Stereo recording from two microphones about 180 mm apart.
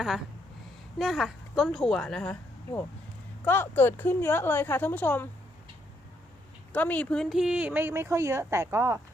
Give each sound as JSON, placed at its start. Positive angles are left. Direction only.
{"t": 0.9, "sound": "speech", "side_deg": 0}
{"t": 6.7, "sound": "speech", "side_deg": 10}